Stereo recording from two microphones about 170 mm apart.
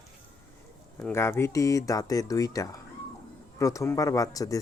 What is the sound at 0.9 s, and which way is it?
Speech, 15° left (ahead or behind).